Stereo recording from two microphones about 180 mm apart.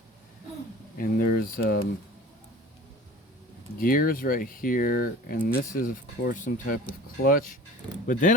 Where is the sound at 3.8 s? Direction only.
55° left (ahead or behind).